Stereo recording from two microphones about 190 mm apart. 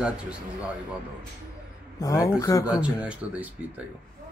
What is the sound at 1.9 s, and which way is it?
Speech, 20° left (ahead or behind).